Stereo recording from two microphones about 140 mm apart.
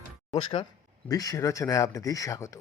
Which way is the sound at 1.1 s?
25° left (ahead or behind).